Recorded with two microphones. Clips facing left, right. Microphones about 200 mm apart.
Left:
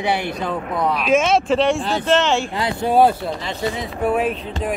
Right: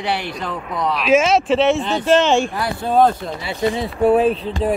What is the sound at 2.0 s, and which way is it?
Speech, 15° right (ahead or behind).